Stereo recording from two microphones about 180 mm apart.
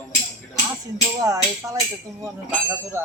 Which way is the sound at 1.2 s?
20° right (ahead or behind).